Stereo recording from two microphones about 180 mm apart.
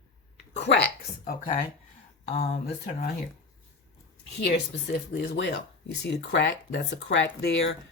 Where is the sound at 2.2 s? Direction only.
35° left (ahead or behind).